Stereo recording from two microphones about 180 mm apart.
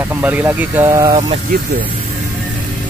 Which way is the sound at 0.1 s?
10° right (ahead or behind).